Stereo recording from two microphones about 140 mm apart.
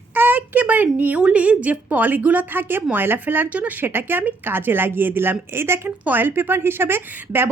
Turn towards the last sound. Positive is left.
turn(degrees=-15)  # may be behind; listen again after turning